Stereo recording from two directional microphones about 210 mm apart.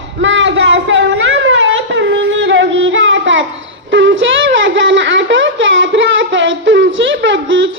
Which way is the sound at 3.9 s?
65° right (ahead or behind).